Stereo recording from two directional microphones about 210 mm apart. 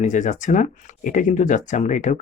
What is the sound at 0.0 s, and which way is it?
Speech, 35° left (ahead or behind).